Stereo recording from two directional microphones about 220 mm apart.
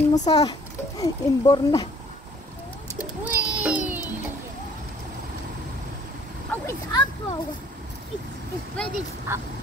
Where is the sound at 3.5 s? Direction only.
5° right (ahead or behind).